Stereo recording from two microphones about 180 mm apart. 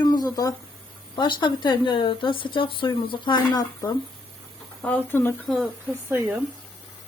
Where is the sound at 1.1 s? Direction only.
25° left (ahead or behind).